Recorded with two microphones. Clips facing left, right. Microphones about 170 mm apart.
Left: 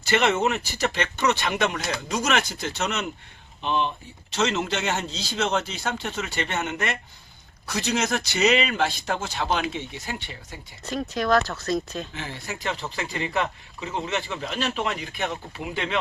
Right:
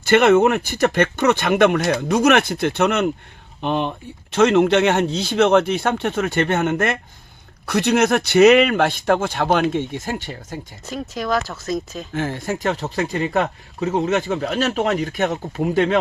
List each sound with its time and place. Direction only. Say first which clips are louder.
0.0 s speech: right 9 dB; 55° right (ahead or behind)
10.8 s speech: left 1 dB; 5° right (ahead or behind)
12.1 s speech: right 11 dB; 50° right (ahead or behind)